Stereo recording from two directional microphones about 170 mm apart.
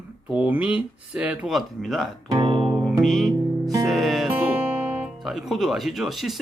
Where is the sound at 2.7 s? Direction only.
5° right (ahead or behind).